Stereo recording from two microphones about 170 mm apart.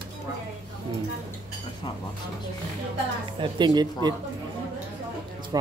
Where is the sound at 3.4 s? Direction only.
25° right (ahead or behind).